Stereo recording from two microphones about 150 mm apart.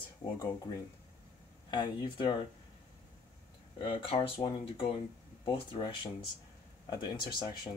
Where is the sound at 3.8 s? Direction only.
35° left (ahead or behind).